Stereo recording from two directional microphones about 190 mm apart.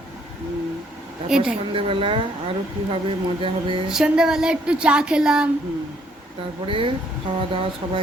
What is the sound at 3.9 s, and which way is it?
Speech, 5° right (ahead or behind).